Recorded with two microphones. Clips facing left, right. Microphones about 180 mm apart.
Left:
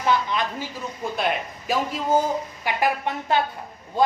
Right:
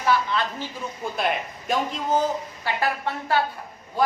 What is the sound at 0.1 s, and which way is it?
Speech, 15° left (ahead or behind).